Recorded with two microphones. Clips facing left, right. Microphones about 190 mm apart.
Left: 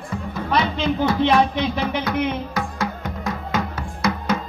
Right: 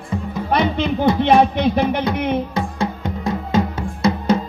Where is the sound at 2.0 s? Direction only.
25° right (ahead or behind).